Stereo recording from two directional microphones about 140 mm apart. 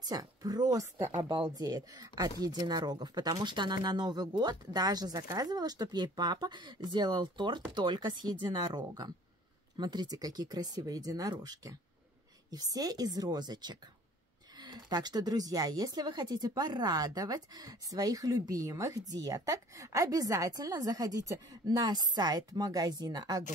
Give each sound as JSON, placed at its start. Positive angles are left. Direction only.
{"t": 0.0, "sound": "a woman's voice", "side_deg": -30}